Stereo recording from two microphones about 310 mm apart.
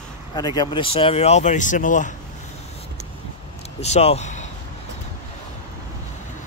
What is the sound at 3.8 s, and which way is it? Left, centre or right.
Speech, left.